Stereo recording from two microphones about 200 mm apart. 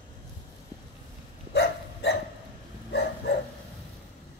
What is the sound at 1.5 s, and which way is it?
Dog, 55° left (ahead or behind).